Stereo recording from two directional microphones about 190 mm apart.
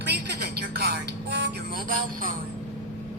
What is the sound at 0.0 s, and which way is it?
Music, 60° right (ahead or behind).